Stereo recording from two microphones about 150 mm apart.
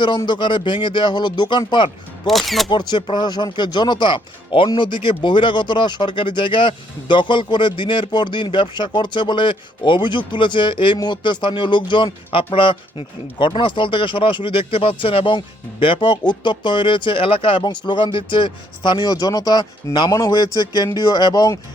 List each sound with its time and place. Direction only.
0.2 s speech: 30° left (ahead or behind)
2.2 s speech: centre (ahead or behind)
2.6 s speech: 30° left (ahead or behind)